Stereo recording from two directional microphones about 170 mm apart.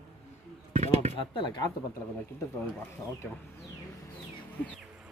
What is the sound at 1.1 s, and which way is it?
Speech, 30° left (ahead or behind).